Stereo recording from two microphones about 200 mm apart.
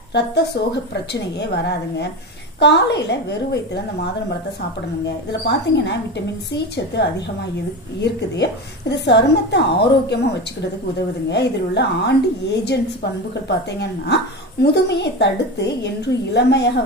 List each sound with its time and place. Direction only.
0.1 s a woman's voice: 55° left (ahead or behind)
5.0 s a woman's voice: 60° left (ahead or behind)
8.9 s a woman's voice: 60° left (ahead or behind)